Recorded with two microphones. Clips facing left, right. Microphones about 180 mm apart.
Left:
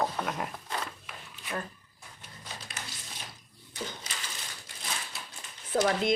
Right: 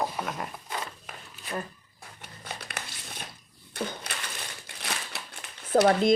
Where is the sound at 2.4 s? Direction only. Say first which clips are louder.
Right 4 dB; 60° right (ahead or behind).